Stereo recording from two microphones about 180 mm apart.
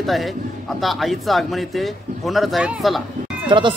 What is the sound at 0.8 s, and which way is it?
Speech, centre (ahead or behind).